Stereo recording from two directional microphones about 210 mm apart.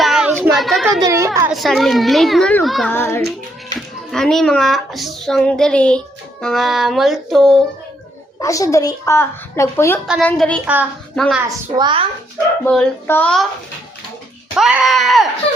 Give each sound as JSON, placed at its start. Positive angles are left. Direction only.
{"t": 0.0, "sound": "a sound", "side_deg": 0}
{"t": 0.9, "sound": "a child's voice", "side_deg": -15}
{"t": 1.5, "sound": "speech", "side_deg": 0}
{"t": 8.4, "sound": "a woman's voice", "side_deg": 15}
{"t": 10.1, "sound": "a woman's voice", "side_deg": 0}
{"t": 11.3, "sound": "a child's voice", "side_deg": -20}
{"t": 12.6, "sound": "speech", "side_deg": 10}
{"t": 14.5, "sound": "speech", "side_deg": -5}